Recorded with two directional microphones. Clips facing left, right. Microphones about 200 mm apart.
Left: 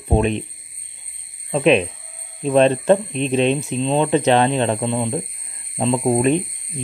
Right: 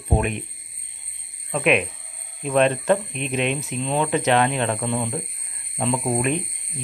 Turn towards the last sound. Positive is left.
turn(degrees=30)  # may be behind; listen again after turning